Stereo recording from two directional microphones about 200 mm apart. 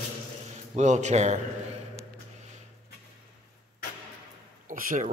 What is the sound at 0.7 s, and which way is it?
Speech, 35° right (ahead or behind).